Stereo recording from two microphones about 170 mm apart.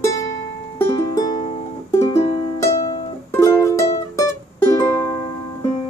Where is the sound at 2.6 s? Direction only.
20° left (ahead or behind).